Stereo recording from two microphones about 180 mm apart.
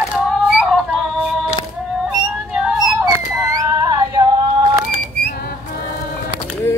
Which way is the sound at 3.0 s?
20° right (ahead or behind).